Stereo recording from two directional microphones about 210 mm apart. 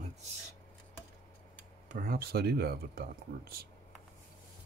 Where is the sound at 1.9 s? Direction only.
45° right (ahead or behind).